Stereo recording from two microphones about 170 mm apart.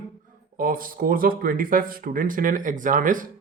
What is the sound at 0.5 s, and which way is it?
Speech, 55° right (ahead or behind).